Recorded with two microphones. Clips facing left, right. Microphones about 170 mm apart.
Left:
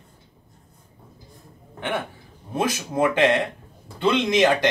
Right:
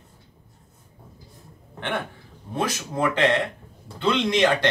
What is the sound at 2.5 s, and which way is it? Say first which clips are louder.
Speech: left 2 dB; 20° left (ahead or behind).